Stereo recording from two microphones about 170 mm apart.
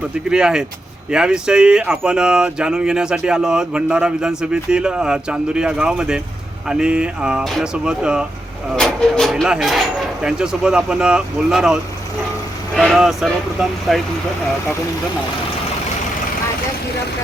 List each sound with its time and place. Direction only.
0.3 s speech: 5° right (ahead or behind)